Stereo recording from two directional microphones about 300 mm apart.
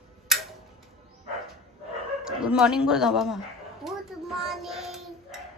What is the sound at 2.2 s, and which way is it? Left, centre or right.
Speech, centre.